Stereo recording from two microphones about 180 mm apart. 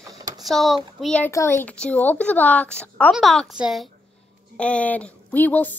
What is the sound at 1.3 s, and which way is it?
A woman's voice, 15° left (ahead or behind).